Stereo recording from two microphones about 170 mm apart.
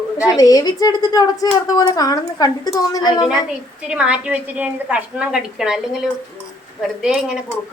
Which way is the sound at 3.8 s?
5° right (ahead or behind).